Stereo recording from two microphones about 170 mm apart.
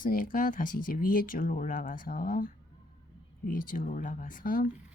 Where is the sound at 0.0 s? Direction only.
55° left (ahead or behind).